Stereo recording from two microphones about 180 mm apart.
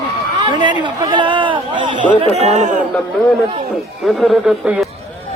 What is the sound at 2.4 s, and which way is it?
Speech, 40° right (ahead or behind).